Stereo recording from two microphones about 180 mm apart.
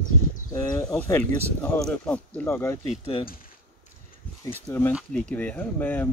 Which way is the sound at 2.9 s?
30° left (ahead or behind).